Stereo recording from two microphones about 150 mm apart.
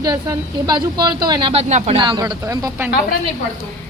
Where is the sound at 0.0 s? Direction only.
25° right (ahead or behind).